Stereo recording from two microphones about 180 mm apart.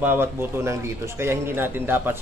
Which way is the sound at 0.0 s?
10° right (ahead or behind).